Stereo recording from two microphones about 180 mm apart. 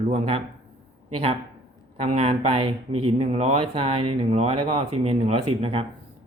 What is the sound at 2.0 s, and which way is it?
Speech, 35° right (ahead or behind).